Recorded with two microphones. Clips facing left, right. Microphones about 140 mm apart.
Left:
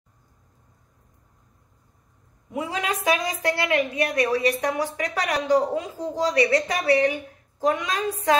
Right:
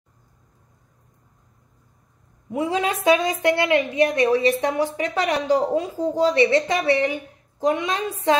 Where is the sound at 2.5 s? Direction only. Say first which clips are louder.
Right 5 dB; 30° right (ahead or behind).